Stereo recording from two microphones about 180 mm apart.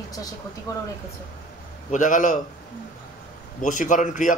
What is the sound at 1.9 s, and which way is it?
Speech, 45° left (ahead or behind).